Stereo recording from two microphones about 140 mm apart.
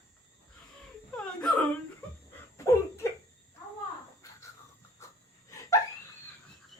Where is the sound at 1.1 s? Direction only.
5° left (ahead or behind).